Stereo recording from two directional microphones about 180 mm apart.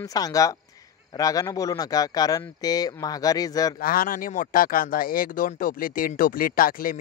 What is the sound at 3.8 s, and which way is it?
Speech, 50° left (ahead or behind).